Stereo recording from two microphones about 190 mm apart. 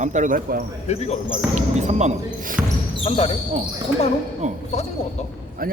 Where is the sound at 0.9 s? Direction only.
35° left (ahead or behind).